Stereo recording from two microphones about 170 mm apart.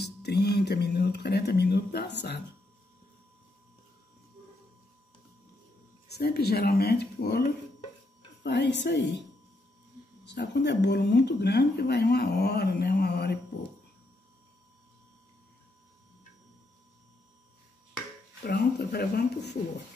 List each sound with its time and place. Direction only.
0.0 s speech: 75° left (ahead or behind)
6.0 s speech: 70° left (ahead or behind)
8.5 s speech: 90° left
10.2 s speech: 90° left; by 13.4 s 75° left (ahead or behind)
18.4 s speech: 70° left (ahead or behind)